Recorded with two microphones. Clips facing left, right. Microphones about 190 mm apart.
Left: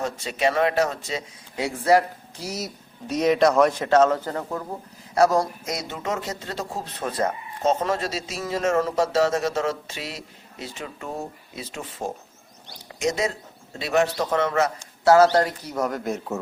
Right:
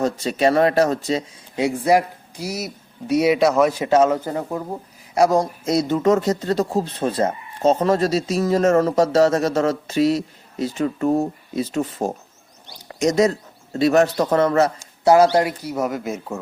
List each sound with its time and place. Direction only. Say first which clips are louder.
0.0 s speech: right 5 dB; 40° right (ahead or behind)
1.5 s speech: right 2 dB; 15° right (ahead or behind)
5.6 s speech: right 12 dB; 35° right (ahead or behind)
15.0 s speech: right 2 dB; 15° right (ahead or behind)